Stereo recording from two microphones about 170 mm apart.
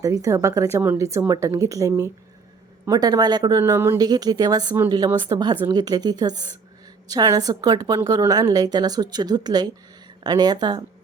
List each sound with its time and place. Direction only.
0.0 s a woman's voice: 20° right (ahead or behind)